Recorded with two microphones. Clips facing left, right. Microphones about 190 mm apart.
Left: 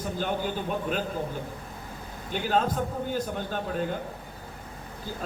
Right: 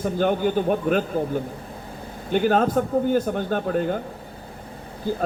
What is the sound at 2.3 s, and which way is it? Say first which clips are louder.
A man's voice: right 7 dB; 55° right (ahead or behind).